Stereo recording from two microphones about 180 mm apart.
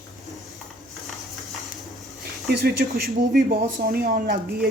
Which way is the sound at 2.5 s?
60° right (ahead or behind).